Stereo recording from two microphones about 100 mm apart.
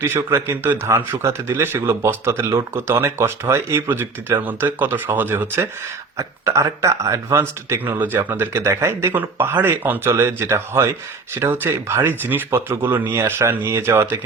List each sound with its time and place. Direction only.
0.0 s speech: 25° right (ahead or behind)